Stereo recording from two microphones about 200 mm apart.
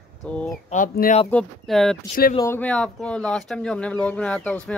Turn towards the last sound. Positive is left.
turn(degrees=5)  # may be behind; listen again after turning